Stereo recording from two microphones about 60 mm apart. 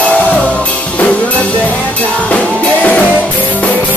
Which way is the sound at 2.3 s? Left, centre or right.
Left.